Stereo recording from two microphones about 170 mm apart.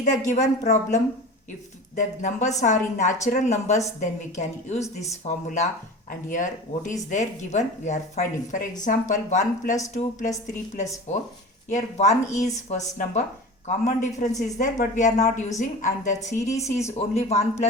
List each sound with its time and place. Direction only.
0.0 s a woman's voice: 45° left (ahead or behind)
16.4 s speech: 20° left (ahead or behind)
17.2 s a man's voice: 40° left (ahead or behind)